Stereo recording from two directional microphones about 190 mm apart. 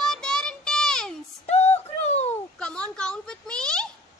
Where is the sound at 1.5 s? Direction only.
35° left (ahead or behind).